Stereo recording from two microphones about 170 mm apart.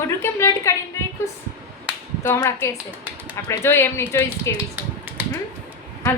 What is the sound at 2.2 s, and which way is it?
Speech, 15° left (ahead or behind).